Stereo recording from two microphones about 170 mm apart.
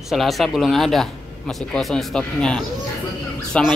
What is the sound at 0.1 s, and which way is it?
Speech, centre (ahead or behind).